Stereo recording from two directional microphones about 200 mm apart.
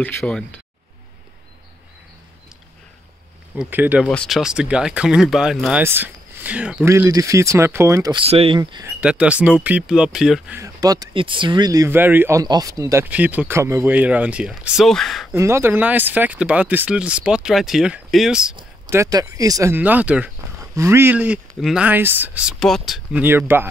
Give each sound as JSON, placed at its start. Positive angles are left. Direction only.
{"t": 0.0, "sound": "speech", "side_deg": 5}
{"t": 3.5, "sound": "speech", "side_deg": -10}
{"t": 4.1, "sound": "speech", "side_deg": 0}
{"t": 8.2, "sound": "speech", "side_deg": -30}
{"t": 8.8, "sound": "speech", "side_deg": -5}
{"t": 10.6, "sound": "speech", "side_deg": -15}
{"t": 15.3, "sound": "speech", "side_deg": -15}
{"t": 18.9, "sound": "speech", "side_deg": -15}